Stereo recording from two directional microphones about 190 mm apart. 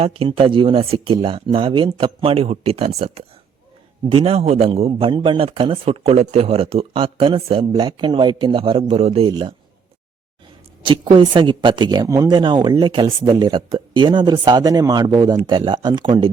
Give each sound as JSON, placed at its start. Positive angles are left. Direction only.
{"t": 0.0, "sound": "a man's voice", "side_deg": -30}
{"t": 10.8, "sound": "speech", "side_deg": -25}